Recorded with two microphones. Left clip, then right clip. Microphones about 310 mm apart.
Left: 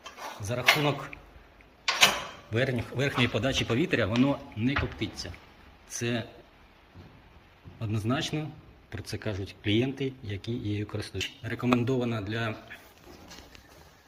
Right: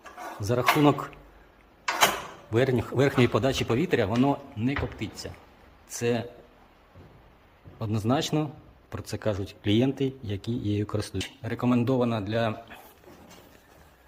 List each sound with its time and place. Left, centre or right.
0.4 s speech: right
2.5 s a man's voice: centre
7.8 s speech: centre